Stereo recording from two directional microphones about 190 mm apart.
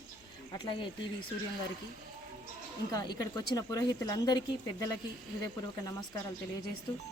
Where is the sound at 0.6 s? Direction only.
25° left (ahead or behind).